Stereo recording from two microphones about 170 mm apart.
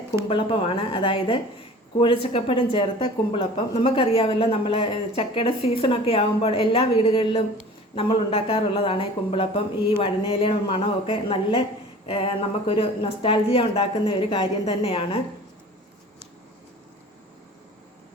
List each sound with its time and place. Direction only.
0.3 s a woman's voice: 30° left (ahead or behind)